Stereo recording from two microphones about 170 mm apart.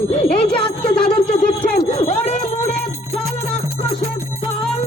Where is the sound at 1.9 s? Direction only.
40° left (ahead or behind).